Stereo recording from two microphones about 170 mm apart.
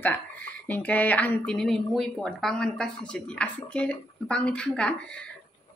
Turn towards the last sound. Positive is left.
turn(degrees=5)  # may be behind; listen again after turning